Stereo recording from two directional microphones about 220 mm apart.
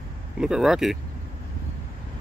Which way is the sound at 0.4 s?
5° right (ahead or behind).